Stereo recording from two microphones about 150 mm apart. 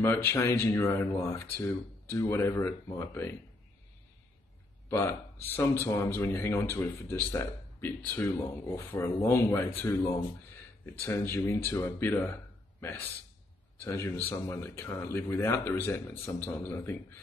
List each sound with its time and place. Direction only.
0.0 s speech: 15° left (ahead or behind)
4.8 s speech: 15° left (ahead or behind)
13.8 s speech: 15° left (ahead or behind)